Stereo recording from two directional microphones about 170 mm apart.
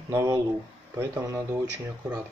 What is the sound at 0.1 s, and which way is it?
Speech, 15° right (ahead or behind).